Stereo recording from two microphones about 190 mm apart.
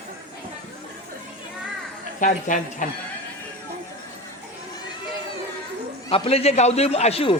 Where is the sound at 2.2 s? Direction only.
45° left (ahead or behind).